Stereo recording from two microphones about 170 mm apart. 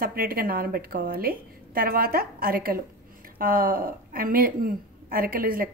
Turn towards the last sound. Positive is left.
turn(degrees=-60)  # may be behind; listen again after turning